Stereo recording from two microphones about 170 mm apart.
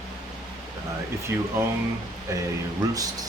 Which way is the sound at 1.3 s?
10° right (ahead or behind).